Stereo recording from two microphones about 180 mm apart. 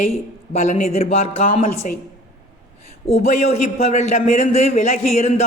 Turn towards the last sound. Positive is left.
turn(degrees=40)  # may be behind; listen again after turning